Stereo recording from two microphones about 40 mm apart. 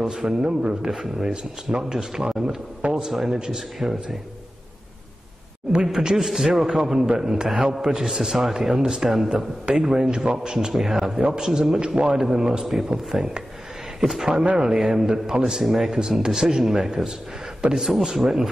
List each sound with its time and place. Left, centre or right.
0.0 s a man's voice: centre
3.1 s a man's voice: centre
5.7 s a man's voice: centre
11.1 s a man's voice: centre
15.6 s a man's voice: centre